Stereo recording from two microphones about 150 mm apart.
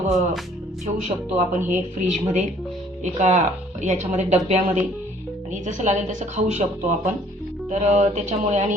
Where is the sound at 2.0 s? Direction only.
50° right (ahead or behind).